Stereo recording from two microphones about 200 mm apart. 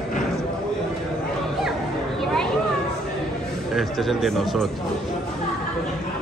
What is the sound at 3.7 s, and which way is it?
A man's voice, centre (ahead or behind).